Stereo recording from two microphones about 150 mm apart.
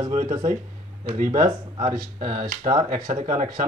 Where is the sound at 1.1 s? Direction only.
60° right (ahead or behind).